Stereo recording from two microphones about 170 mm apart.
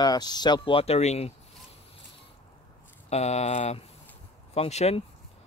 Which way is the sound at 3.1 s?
40° left (ahead or behind).